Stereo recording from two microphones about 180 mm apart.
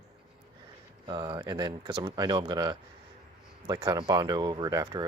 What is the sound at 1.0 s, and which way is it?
Speech, 25° right (ahead or behind).